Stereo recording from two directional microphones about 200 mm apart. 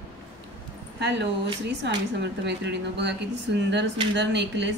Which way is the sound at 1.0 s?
60° right (ahead or behind).